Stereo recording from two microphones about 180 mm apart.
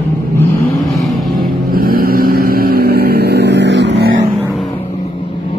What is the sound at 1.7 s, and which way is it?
Vehicle, 55° right (ahead or behind).